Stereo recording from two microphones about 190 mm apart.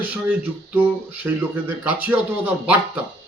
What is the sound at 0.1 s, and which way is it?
Speech, 10° right (ahead or behind).